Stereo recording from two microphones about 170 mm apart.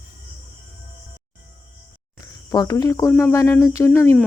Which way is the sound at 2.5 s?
20° left (ahead or behind).